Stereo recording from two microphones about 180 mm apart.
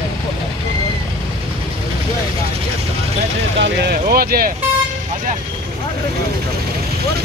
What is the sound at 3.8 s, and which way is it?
Vehicle, 55° right (ahead or behind).